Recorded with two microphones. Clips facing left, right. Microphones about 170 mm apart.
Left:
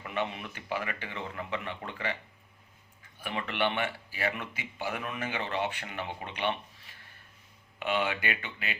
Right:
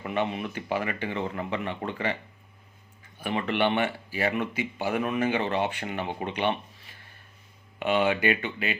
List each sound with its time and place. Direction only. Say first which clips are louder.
0.0 s speech: right 6 dB; 25° right (ahead or behind)
3.2 s speech: right 6 dB; 25° right (ahead or behind)
7.8 s speech: right 6 dB; 25° right (ahead or behind)